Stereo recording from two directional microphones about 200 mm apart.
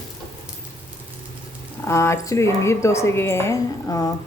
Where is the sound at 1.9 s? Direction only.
15° left (ahead or behind).